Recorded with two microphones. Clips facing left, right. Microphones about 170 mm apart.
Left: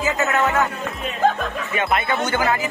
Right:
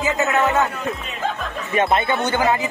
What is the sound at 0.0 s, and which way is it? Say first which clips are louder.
Music: right 1 dB; 20° right (ahead or behind).